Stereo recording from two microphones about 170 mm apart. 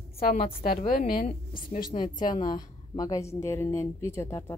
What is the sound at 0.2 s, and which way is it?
A woman's voice, 60° left (ahead or behind).